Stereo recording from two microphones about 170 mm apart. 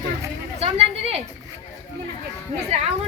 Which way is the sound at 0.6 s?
35° right (ahead or behind).